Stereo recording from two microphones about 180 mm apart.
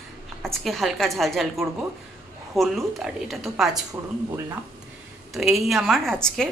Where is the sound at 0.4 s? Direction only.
Centre (ahead or behind).